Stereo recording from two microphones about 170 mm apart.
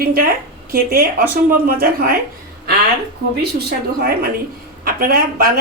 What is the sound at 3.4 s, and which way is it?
Speech, 70° right (ahead or behind).